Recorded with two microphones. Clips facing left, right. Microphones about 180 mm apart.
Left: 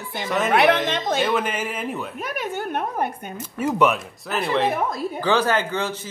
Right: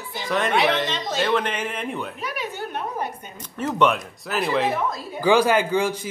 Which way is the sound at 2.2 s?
50° left (ahead or behind).